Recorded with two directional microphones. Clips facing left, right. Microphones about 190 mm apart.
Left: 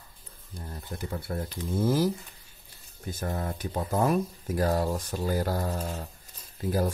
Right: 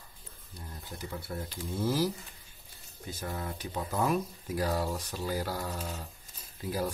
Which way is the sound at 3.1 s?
45° left (ahead or behind).